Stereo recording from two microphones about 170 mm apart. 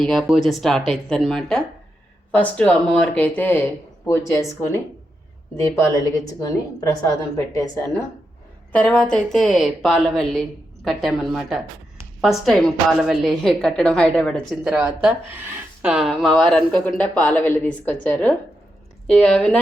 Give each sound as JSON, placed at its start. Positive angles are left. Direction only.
{"t": 0.0, "sound": "a woman's voice", "side_deg": 0}
{"t": 6.4, "sound": "a woman's voice", "side_deg": 20}
{"t": 8.7, "sound": "a woman's voice", "side_deg": 5}